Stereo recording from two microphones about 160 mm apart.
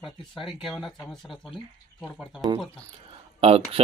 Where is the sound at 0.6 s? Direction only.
Centre (ahead or behind).